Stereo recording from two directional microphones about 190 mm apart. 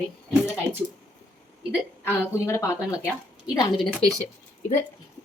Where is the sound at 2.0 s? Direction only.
15° left (ahead or behind).